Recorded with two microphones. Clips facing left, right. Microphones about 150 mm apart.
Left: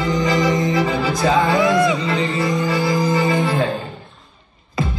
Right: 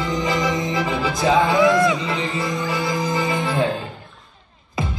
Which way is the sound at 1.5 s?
25° left (ahead or behind).